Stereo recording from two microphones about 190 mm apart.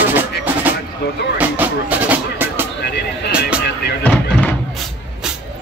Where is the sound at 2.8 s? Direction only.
60° left (ahead or behind).